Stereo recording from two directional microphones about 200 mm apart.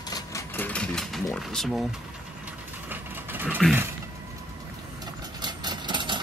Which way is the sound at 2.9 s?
10° right (ahead or behind).